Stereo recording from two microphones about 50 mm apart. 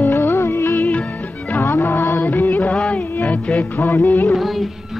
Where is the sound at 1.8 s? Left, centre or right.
Left.